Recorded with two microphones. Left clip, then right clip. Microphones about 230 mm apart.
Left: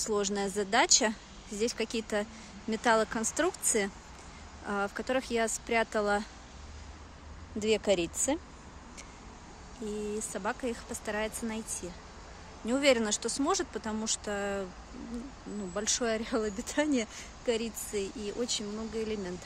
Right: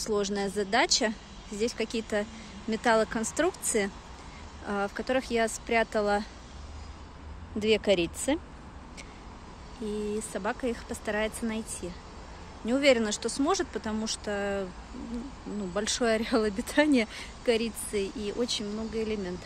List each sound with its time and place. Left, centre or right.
0.0 s speech: centre
7.5 s speech: centre
10.1 s speech: centre
15.7 s speech: centre